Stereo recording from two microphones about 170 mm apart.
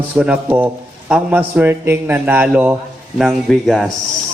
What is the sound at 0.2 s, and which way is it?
A man's voice, 10° right (ahead or behind).